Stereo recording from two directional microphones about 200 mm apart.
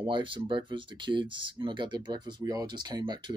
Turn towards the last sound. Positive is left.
turn(degrees=-20)  # may be behind; listen again after turning